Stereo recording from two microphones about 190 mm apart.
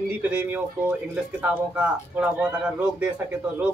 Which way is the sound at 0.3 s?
10° right (ahead or behind).